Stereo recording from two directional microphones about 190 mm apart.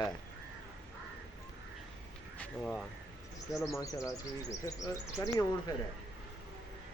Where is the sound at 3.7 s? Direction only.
15° left (ahead or behind).